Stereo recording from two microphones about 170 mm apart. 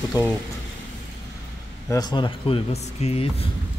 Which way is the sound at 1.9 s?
25° left (ahead or behind).